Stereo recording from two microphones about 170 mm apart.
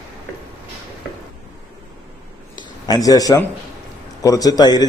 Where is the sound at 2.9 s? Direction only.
20° left (ahead or behind).